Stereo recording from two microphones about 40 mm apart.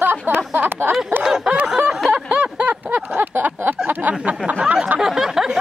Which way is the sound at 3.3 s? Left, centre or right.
Right.